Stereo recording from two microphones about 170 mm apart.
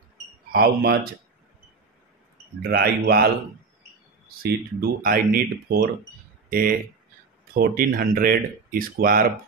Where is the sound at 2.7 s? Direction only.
65° right (ahead or behind).